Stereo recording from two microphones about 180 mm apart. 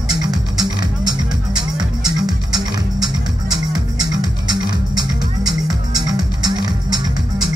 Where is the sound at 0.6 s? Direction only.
25° right (ahead or behind).